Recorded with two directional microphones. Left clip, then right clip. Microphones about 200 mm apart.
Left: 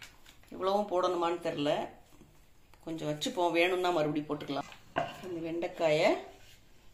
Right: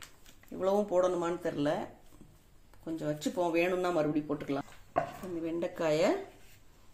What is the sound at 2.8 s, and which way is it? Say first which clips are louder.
Speech: even; 50° right (ahead or behind).